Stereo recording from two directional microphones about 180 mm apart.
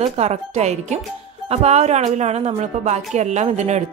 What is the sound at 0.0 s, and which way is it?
A woman's voice, 40° right (ahead or behind).